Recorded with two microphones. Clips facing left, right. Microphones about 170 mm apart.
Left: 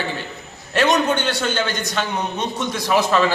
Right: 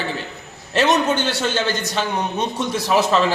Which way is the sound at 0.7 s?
25° right (ahead or behind).